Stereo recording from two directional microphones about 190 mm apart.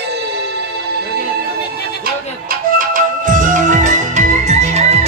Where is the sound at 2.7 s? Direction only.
45° right (ahead or behind).